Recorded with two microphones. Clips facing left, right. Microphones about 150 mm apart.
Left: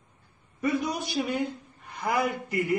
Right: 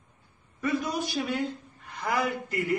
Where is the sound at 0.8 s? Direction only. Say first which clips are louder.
Left 1 dB; 15° left (ahead or behind).